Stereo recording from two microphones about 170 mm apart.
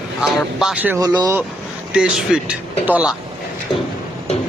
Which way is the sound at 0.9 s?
20° right (ahead or behind).